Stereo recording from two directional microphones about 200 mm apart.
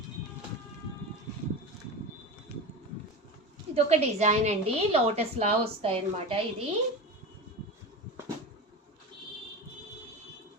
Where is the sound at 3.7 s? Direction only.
30° right (ahead or behind).